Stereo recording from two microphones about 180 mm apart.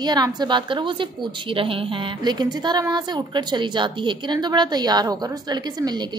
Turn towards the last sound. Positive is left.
turn(degrees=-20)  # may be behind; listen again after turning